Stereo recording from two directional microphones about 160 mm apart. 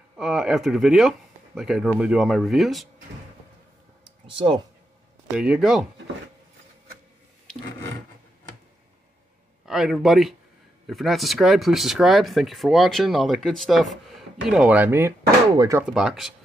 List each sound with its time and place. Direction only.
0.2 s speech: centre (ahead or behind)
4.3 s speech: 30° right (ahead or behind)
5.3 s speech: 5° right (ahead or behind)
9.7 s speech: centre (ahead or behind); by 15.8 s 20° right (ahead or behind)
15.8 s speech: centre (ahead or behind)